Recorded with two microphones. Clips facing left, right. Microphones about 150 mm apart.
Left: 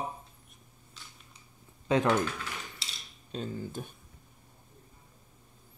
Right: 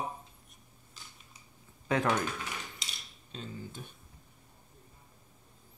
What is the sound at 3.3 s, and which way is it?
Speech, 45° left (ahead or behind).